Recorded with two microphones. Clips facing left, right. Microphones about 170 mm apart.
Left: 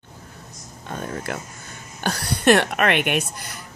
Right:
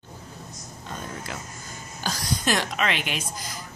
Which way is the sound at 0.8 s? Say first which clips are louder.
Left 6 dB; 55° left (ahead or behind).